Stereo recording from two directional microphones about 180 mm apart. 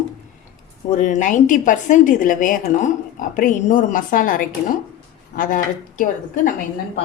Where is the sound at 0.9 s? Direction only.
40° left (ahead or behind).